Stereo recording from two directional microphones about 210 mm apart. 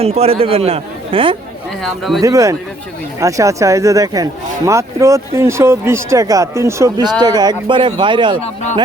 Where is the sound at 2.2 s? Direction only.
15° right (ahead or behind).